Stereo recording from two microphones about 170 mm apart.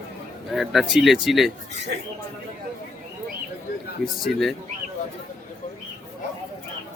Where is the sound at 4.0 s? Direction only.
Centre (ahead or behind).